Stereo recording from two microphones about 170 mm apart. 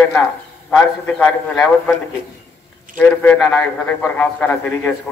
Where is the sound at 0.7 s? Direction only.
5° left (ahead or behind).